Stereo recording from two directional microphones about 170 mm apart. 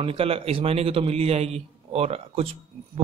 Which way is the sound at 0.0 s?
35° right (ahead or behind).